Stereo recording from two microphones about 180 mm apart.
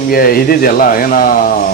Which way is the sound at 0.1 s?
55° left (ahead or behind).